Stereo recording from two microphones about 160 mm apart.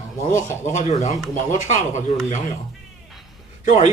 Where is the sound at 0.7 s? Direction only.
45° left (ahead or behind).